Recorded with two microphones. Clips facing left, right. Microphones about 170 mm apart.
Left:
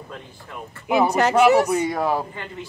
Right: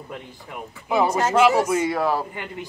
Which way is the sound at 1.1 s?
70° left (ahead or behind).